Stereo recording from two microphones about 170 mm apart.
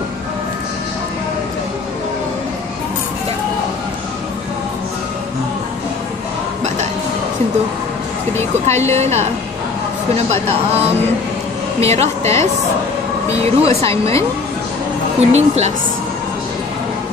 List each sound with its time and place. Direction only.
8.8 s speech: 40° right (ahead or behind)
12.2 s speech: 15° left (ahead or behind)
13.4 s speech: 35° right (ahead or behind)
15.1 s speech: 40° right (ahead or behind)